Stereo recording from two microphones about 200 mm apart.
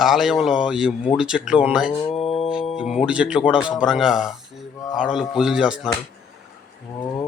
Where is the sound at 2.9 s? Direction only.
5° right (ahead or behind).